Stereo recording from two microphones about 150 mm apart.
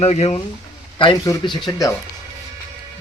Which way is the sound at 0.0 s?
45° left (ahead or behind).